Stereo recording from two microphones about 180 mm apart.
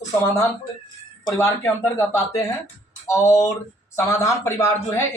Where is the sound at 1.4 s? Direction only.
15° left (ahead or behind).